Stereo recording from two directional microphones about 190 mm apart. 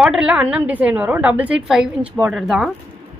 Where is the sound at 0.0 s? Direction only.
5° right (ahead or behind).